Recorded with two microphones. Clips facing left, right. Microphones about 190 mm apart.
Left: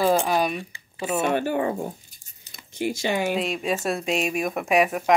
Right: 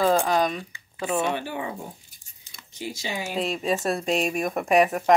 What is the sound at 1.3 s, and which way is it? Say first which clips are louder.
Speech: left 7 dB; 50° left (ahead or behind).